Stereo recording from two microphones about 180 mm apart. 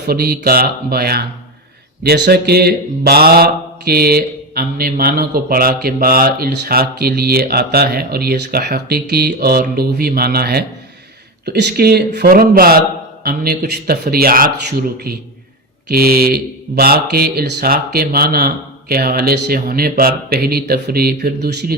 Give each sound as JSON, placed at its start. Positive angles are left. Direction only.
{"t": 0.1, "sound": "speech", "side_deg": -60}